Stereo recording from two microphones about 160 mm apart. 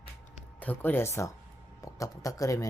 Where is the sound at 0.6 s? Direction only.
10° left (ahead or behind).